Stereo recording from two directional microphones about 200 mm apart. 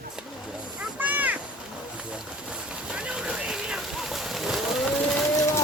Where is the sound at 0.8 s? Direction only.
5° right (ahead or behind).